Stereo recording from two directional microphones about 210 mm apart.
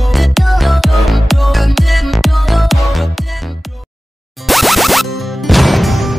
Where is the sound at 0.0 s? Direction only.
Centre (ahead or behind).